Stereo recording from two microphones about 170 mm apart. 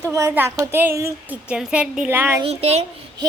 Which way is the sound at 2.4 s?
35° right (ahead or behind).